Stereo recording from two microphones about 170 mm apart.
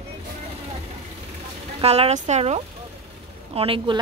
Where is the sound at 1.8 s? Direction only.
35° right (ahead or behind).